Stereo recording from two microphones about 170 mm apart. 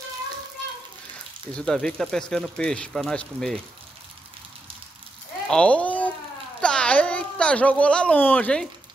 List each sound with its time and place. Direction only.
1.5 s speech: 5° left (ahead or behind)
5.5 s speech: 5° left (ahead or behind)